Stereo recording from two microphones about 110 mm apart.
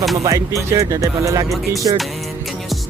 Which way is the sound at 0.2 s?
30° right (ahead or behind).